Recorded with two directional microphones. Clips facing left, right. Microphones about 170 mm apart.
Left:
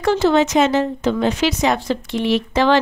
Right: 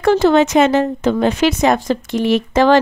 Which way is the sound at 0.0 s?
55° right (ahead or behind).